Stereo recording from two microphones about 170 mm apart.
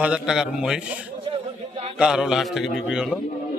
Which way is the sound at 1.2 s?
35° right (ahead or behind).